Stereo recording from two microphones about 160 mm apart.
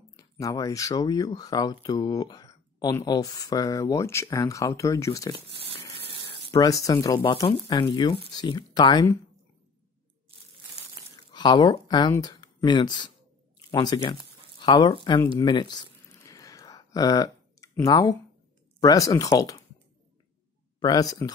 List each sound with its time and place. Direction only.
0.1 s speech: 20° left (ahead or behind)
6.5 s speech: 20° left (ahead or behind)
11.3 s speech: 25° left (ahead or behind)
15.3 s a sound: 25° left (ahead or behind)
17.8 s speech: 25° left (ahead or behind)
20.8 s speech: 25° left (ahead or behind)